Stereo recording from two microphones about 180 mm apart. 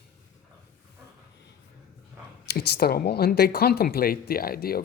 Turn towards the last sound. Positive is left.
turn(degrees=55)  # may be behind; listen again after turning